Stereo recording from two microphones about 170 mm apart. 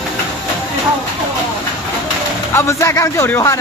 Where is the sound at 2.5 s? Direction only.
15° left (ahead or behind).